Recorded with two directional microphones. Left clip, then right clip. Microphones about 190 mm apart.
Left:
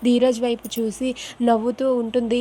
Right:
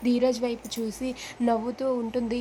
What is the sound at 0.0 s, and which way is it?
Speech, 25° left (ahead or behind).